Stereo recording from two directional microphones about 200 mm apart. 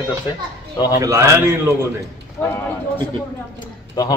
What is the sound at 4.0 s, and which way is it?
Speech, 20° left (ahead or behind).